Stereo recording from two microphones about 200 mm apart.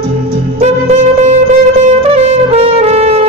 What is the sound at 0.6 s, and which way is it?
Music, 35° right (ahead or behind).